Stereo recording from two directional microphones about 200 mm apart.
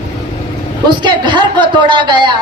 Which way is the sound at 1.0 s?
20° right (ahead or behind).